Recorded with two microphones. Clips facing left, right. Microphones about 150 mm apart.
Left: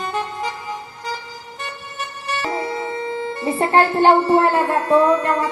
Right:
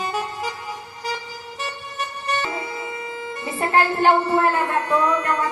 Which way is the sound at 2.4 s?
30° left (ahead or behind).